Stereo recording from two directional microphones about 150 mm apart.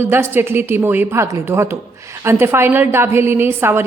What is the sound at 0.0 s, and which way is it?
A woman's voice, 15° right (ahead or behind).